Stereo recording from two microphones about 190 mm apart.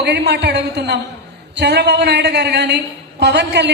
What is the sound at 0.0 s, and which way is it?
A woman's voice, 60° right (ahead or behind).